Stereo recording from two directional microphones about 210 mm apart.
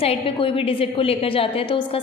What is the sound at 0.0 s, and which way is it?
A woman's voice, 25° left (ahead or behind).